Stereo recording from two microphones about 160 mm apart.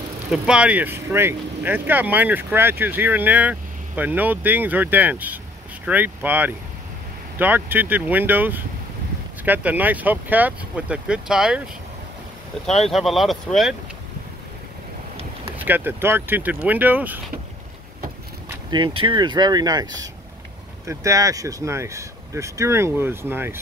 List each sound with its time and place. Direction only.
0.3 s speech: 5° right (ahead or behind)
12.8 s speech: centre (ahead or behind)
15.5 s speech: 10° right (ahead or behind)
18.7 s speech: 30° right (ahead or behind); by 23.6 s 15° right (ahead or behind)